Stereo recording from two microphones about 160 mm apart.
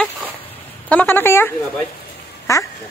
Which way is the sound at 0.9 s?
10° left (ahead or behind).